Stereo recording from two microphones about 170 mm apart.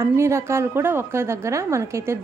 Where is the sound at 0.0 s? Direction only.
15° right (ahead or behind).